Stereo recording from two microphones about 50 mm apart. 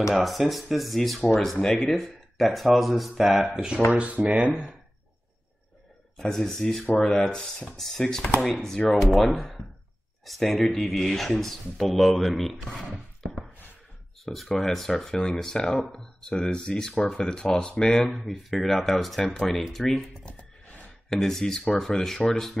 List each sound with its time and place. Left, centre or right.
0.1 s speech: centre
3.4 s speech: centre
6.1 s speech: centre
7.0 s speech: centre
18.1 s speech: centre
21.1 s speech: centre